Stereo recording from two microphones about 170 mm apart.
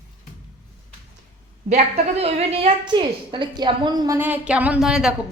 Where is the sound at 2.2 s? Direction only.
40° right (ahead or behind).